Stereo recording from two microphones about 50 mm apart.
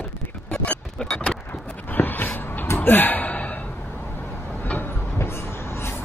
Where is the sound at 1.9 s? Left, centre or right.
Left.